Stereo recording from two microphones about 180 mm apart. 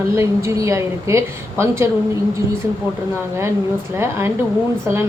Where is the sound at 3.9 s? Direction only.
15° right (ahead or behind).